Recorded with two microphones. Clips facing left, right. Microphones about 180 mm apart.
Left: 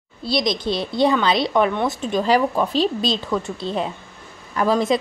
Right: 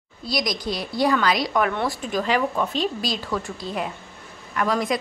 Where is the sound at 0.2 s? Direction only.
25° left (ahead or behind).